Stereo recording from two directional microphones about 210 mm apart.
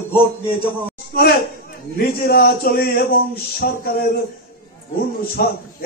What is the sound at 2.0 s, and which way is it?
Speech, 45° left (ahead or behind).